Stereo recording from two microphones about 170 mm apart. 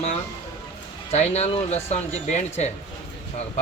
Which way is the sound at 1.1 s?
40° left (ahead or behind).